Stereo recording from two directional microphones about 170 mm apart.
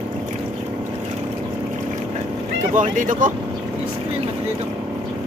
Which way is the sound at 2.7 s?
50° right (ahead or behind).